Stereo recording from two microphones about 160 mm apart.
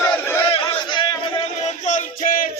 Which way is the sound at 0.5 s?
30° left (ahead or behind).